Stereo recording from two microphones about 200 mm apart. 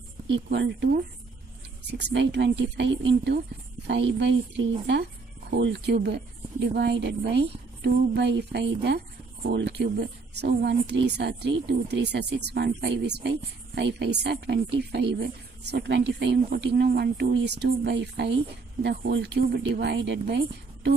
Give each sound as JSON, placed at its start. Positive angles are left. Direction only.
{"t": 0.3, "sound": "speech", "side_deg": -60}